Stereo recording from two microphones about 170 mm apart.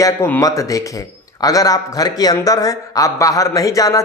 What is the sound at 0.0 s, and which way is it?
Speech, 15° left (ahead or behind).